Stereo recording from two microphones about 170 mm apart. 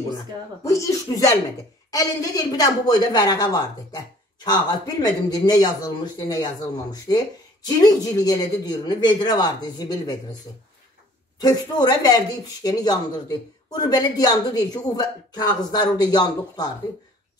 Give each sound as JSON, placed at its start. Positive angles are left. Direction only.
{"t": 0.7, "sound": "speech", "side_deg": 20}
{"t": 11.4, "sound": "speech", "side_deg": 20}